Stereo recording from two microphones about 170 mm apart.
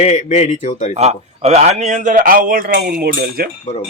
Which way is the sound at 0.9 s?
40° right (ahead or behind).